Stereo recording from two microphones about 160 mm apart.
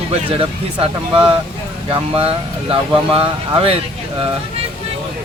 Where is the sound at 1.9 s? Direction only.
35° right (ahead or behind).